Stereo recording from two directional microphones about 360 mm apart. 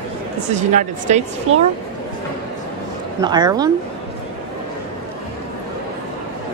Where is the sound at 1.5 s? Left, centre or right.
Right.